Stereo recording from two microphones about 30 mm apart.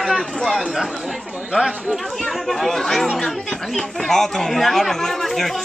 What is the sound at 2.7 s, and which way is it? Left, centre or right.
Speech, centre.